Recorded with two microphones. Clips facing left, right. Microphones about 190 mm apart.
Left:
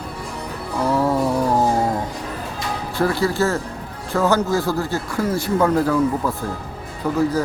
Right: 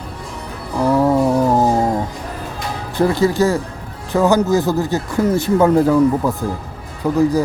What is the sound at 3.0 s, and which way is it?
A man's voice, 20° right (ahead or behind).